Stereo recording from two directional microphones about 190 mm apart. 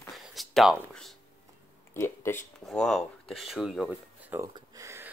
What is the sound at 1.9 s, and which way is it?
Speech, 15° left (ahead or behind).